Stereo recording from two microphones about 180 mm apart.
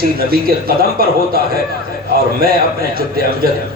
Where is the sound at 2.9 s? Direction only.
55° right (ahead or behind).